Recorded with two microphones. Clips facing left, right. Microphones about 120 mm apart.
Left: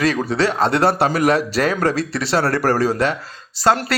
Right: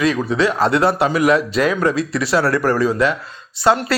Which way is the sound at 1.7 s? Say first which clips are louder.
Right 1 dB; 35° left (ahead or behind).